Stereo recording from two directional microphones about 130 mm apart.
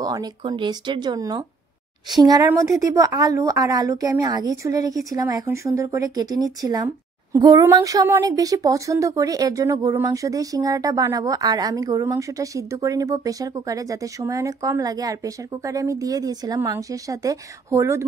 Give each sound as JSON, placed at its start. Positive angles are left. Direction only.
{"t": 0.0, "sound": "speech", "side_deg": -30}